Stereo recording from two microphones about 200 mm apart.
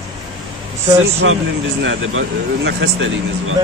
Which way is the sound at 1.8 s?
70° right (ahead or behind).